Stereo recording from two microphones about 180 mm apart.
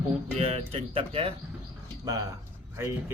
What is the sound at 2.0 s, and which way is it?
Speech, 20° right (ahead or behind).